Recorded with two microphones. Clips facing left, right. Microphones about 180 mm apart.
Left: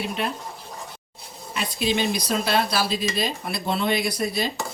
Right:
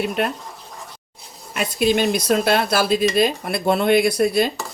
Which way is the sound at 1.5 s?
50° right (ahead or behind).